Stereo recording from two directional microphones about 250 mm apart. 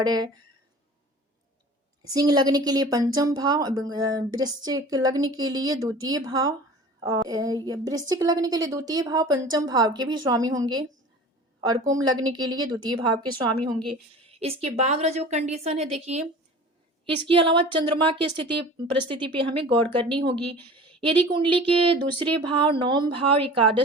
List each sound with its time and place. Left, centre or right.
0.0 s a woman's voice: centre
2.0 s a woman's voice: centre
11.9 s a woman's voice: centre
14.3 s a woman's voice: right
17.2 s a woman's voice: right